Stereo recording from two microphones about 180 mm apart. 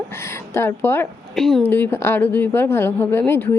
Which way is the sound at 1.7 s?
10° left (ahead or behind).